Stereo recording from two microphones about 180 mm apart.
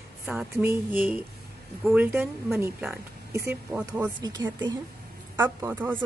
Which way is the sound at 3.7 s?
5° right (ahead or behind).